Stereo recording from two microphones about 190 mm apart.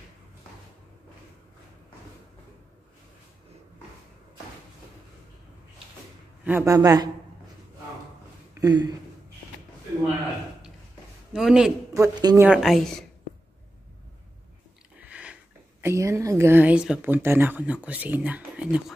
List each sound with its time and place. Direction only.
6.4 s speech: 15° right (ahead or behind)
8.5 s a sound: 20° right (ahead or behind)
11.3 s a woman's voice: 5° right (ahead or behind)
11.9 s speech: 20° right (ahead or behind)
12.4 s a woman's voice: centre (ahead or behind)
15.0 s a sound: 5° right (ahead or behind)
15.8 s speech: 15° right (ahead or behind)